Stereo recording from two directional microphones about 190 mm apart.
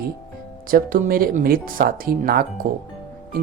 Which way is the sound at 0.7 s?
50° right (ahead or behind).